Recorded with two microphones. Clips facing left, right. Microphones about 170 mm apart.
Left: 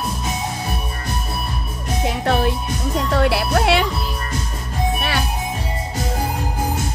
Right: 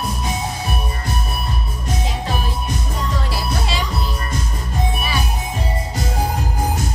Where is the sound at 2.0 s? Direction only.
65° left (ahead or behind).